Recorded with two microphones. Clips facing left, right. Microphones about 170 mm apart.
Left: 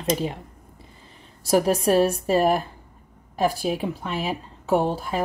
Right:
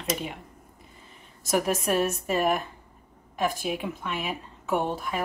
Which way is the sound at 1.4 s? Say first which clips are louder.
Left 6 dB; 30° left (ahead or behind).